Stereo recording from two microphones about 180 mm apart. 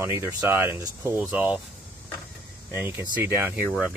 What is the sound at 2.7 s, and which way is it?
Speech, 10° right (ahead or behind).